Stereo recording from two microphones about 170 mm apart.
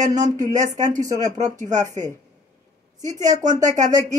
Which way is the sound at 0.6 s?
45° right (ahead or behind).